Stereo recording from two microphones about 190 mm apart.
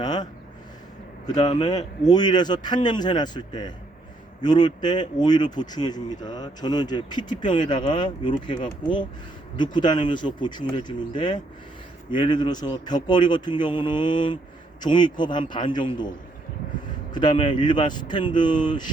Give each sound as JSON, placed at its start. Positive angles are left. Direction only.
{"t": 0.0, "sound": "speech", "side_deg": 20}
{"t": 1.4, "sound": "speech", "side_deg": 20}
{"t": 17.2, "sound": "speech", "side_deg": 25}